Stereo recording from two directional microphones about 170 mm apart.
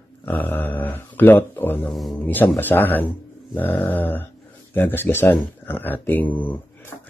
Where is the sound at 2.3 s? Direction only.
10° left (ahead or behind).